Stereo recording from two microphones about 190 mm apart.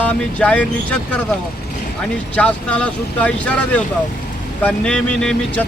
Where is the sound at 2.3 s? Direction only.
5° left (ahead or behind).